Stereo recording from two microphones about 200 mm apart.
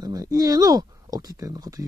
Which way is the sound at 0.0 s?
15° right (ahead or behind).